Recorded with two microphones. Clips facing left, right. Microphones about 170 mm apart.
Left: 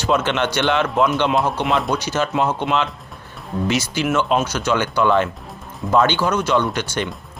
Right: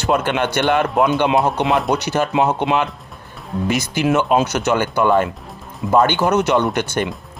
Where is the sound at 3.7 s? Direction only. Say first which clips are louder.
Right 1 dB; 55° right (ahead or behind).